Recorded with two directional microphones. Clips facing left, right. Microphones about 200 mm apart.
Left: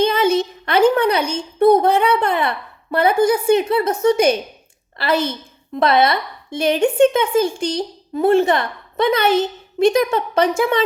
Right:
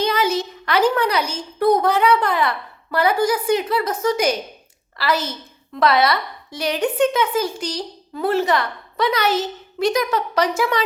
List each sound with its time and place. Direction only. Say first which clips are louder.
0.0 s a sound: left 4 dB; 25° left (ahead or behind)
1.5 s a woman's voice: left 4 dB; 25° left (ahead or behind)
5.1 s a woman's voice: left 8 dB; 55° left (ahead or behind)
5.7 s a woman's voice: left 2 dB; 25° left (ahead or behind)
9.2 s a woman's voice: left 4 dB; 55° left (ahead or behind)
9.7 s a woman's voice: left 5 dB; 25° left (ahead or behind)